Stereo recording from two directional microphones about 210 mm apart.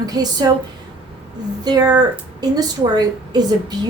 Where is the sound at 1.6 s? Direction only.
20° right (ahead or behind).